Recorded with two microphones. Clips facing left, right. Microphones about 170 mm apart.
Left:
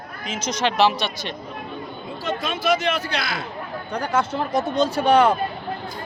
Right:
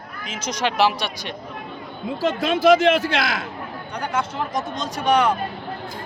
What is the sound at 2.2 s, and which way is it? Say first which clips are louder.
Speech: right 6 dB; 90° right.